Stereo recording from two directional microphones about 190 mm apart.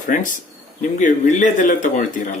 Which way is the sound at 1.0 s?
40° left (ahead or behind).